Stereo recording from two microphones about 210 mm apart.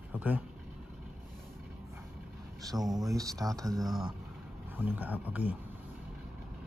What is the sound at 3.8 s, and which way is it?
Speech, centre (ahead or behind).